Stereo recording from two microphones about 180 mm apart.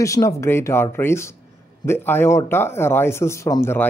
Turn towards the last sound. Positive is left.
turn(degrees=15)  # may be behind; listen again after turning